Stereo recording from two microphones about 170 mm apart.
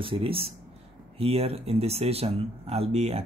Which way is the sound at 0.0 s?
30° right (ahead or behind).